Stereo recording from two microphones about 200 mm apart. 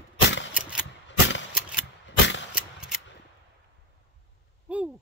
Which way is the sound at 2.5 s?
5° right (ahead or behind).